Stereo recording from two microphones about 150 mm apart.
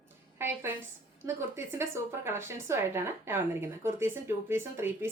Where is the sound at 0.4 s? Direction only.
15° right (ahead or behind).